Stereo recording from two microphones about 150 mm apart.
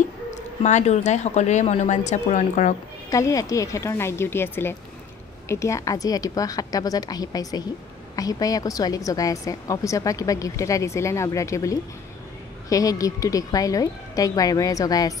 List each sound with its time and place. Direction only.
0.3 s speech: 50° left (ahead or behind)
3.1 s a woman's voice: 20° left (ahead or behind)